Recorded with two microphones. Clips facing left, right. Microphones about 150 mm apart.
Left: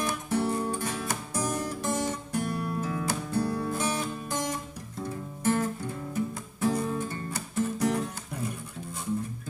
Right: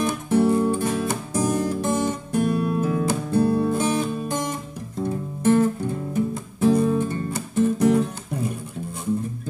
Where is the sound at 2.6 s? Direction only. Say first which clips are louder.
Right 8 dB; 20° right (ahead or behind).